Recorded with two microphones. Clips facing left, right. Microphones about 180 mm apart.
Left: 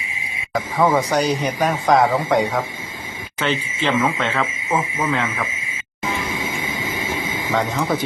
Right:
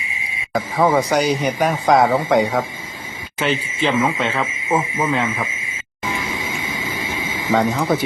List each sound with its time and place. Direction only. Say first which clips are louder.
0.8 s speech: right 1 dB; 10° right (ahead or behind)
7.5 s speech: right 4 dB; 10° right (ahead or behind)